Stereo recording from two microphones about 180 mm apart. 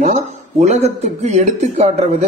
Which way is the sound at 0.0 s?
40° right (ahead or behind).